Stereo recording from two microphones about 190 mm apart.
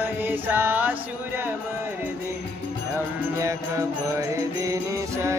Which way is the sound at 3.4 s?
15° right (ahead or behind).